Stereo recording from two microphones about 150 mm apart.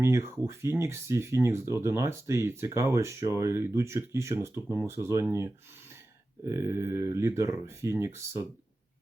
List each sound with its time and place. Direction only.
0.0 s speech: 20° right (ahead or behind)